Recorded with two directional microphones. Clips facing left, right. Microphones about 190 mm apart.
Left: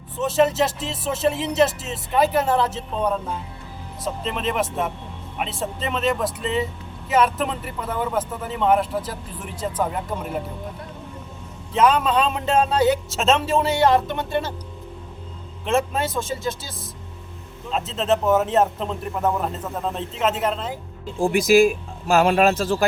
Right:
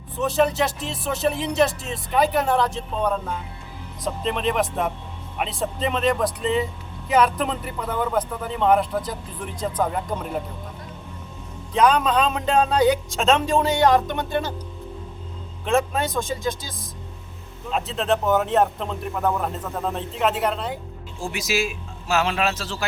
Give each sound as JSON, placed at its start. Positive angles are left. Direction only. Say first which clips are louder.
{"t": 0.2, "sound": "speech", "louder": "left 2 dB", "side_deg": 0}
{"t": 11.7, "sound": "speech", "louder": "even", "side_deg": 5}
{"t": 15.6, "sound": "speech", "louder": "even", "side_deg": 0}
{"t": 21.2, "sound": "speech", "louder": "left 10 dB", "side_deg": 55}